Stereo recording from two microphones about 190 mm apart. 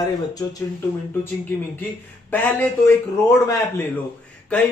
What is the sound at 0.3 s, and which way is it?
A man's voice, 20° left (ahead or behind).